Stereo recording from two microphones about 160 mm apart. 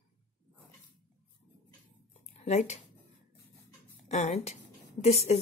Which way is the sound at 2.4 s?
45° left (ahead or behind).